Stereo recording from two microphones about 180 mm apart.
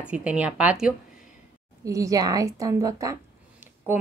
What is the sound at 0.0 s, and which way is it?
Speech, 5° right (ahead or behind).